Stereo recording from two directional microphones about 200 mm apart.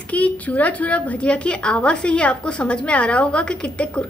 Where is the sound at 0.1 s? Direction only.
5° left (ahead or behind).